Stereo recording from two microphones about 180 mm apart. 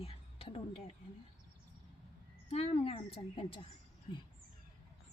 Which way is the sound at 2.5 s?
35° left (ahead or behind).